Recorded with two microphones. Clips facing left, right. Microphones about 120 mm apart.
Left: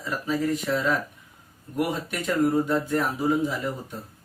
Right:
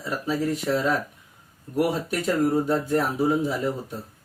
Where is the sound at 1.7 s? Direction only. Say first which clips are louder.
Right 3 dB; 35° right (ahead or behind).